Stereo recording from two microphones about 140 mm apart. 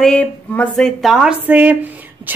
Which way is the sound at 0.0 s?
10° left (ahead or behind).